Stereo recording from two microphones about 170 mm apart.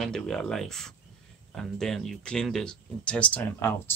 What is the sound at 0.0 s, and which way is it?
Speech, 5° left (ahead or behind).